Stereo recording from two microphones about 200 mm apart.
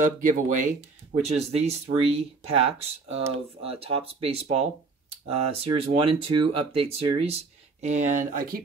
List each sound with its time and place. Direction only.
0.0 s speech: 40° right (ahead or behind)